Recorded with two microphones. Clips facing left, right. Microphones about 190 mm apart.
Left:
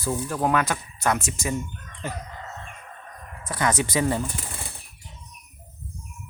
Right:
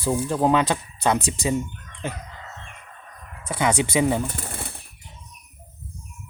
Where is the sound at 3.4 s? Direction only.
20° right (ahead or behind).